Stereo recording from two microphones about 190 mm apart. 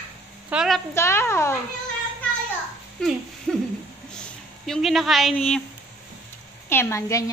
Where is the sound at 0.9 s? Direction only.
15° left (ahead or behind).